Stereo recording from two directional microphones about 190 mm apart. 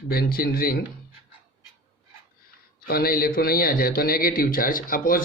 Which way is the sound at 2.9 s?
50° left (ahead or behind).